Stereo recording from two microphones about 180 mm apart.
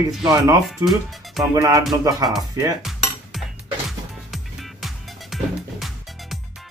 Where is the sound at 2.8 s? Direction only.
Centre (ahead or behind).